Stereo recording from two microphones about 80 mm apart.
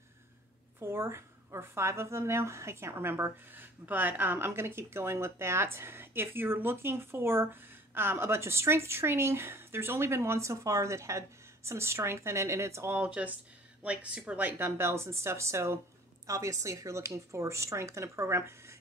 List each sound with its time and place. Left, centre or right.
0.7 s a woman's voice: right
12.9 s a woman's voice: centre
14.6 s a woman's voice: right